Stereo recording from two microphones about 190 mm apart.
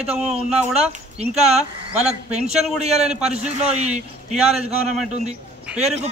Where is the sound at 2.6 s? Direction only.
35° right (ahead or behind).